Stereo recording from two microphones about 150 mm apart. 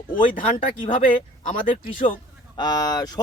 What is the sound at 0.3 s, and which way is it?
Speech, 60° left (ahead or behind).